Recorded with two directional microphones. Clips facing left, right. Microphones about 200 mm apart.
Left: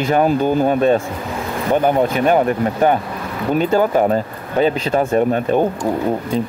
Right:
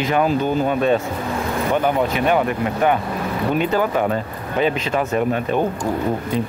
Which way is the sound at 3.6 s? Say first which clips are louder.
Left 6 dB; 35° left (ahead or behind).